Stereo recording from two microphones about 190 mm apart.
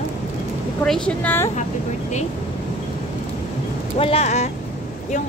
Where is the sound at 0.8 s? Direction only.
5° left (ahead or behind).